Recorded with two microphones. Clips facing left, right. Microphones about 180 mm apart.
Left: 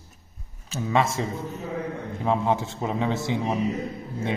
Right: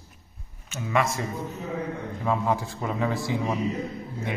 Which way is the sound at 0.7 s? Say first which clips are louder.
Left 2 dB; 25° left (ahead or behind).